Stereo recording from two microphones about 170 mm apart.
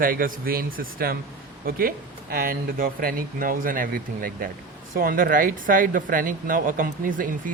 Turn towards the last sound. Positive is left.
turn(degrees=-55)  # may be behind; listen again after turning